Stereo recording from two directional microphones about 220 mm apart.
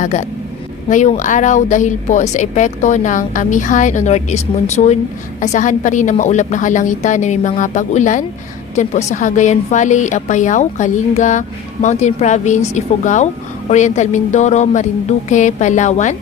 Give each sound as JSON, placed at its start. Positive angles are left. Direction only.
{"t": 0.0, "sound": "a woman's voice", "side_deg": 35}